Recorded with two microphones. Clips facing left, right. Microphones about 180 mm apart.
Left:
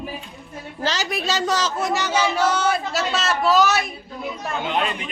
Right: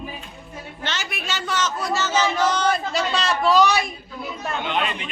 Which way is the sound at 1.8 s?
20° left (ahead or behind).